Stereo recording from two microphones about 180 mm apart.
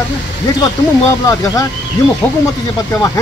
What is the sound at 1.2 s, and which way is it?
Speech, 20° left (ahead or behind).